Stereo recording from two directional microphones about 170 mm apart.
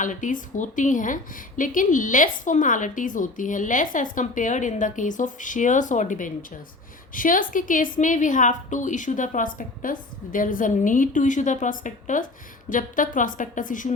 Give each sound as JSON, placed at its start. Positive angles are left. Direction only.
{"t": 0.0, "sound": "a woman's voice", "side_deg": 50}